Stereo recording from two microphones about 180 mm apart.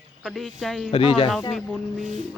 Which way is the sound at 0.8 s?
30° left (ahead or behind).